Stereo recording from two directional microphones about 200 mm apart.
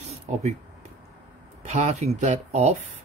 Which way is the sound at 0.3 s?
40° right (ahead or behind).